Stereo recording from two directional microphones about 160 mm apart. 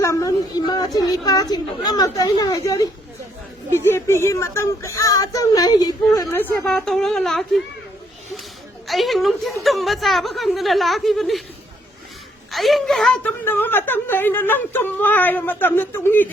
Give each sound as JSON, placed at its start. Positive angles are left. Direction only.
{"t": 0.0, "sound": "speech", "side_deg": 20}
{"t": 6.3, "sound": "a woman's voice", "side_deg": 15}
{"t": 8.9, "sound": "a woman's voice", "side_deg": 0}
{"t": 12.5, "sound": "a woman's voice", "side_deg": 0}